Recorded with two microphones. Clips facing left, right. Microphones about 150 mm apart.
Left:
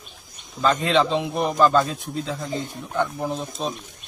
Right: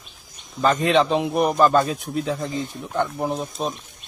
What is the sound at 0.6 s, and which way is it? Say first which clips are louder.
A man's voice: right 2 dB; 15° right (ahead or behind).